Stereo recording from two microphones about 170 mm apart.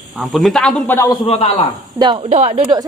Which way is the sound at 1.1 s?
30° left (ahead or behind).